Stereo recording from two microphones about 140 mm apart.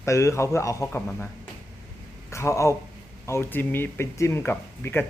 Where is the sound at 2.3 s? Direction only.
20° left (ahead or behind).